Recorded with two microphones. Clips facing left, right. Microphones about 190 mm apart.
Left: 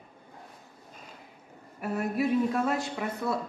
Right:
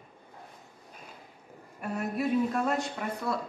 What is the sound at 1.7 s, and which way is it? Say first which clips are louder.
Speech: left 3 dB; 5° left (ahead or behind).